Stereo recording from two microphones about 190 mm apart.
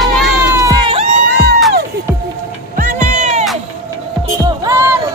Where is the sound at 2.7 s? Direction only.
40° right (ahead or behind).